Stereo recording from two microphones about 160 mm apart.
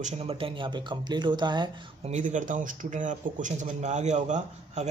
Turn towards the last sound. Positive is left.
turn(degrees=-45)  # may be behind; listen again after turning